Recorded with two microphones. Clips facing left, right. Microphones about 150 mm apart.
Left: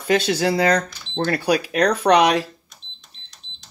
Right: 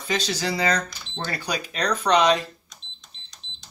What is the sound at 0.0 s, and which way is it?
Speech, 60° left (ahead or behind).